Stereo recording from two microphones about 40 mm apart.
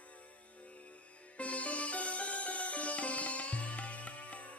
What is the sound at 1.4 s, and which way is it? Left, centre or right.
Music, left.